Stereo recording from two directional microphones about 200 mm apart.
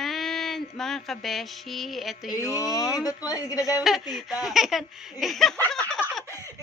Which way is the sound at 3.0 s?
20° left (ahead or behind).